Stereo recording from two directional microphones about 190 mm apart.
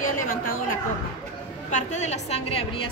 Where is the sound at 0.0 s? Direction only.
45° left (ahead or behind).